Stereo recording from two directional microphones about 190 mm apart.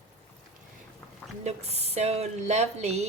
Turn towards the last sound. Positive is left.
turn(degrees=-35)  # may be behind; listen again after turning